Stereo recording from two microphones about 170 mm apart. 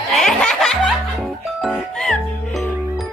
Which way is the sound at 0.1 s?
5° left (ahead or behind).